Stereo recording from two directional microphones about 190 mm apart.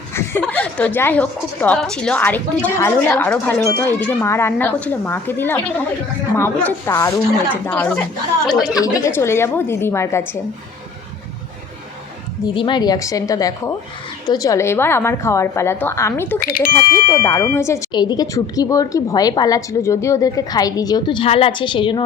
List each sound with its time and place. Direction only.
0.1 s a woman's voice: 10° left (ahead or behind)
8.7 s a woman's voice: 20° left (ahead or behind)
12.5 s a woman's voice: 25° left (ahead or behind)
16.4 s speech: 50° left (ahead or behind)
17.1 s speech: 15° left (ahead or behind)